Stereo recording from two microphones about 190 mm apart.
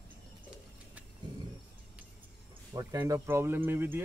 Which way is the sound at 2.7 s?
20° right (ahead or behind).